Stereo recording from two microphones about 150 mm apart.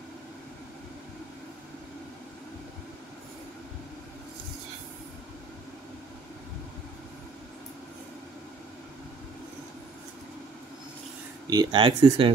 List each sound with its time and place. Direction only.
11.5 s speech: 35° right (ahead or behind)